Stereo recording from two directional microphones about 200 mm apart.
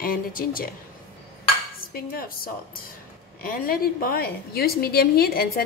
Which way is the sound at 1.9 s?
45° left (ahead or behind).